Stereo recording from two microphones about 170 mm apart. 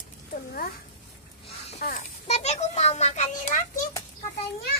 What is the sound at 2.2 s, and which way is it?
A child's voice, 40° left (ahead or behind).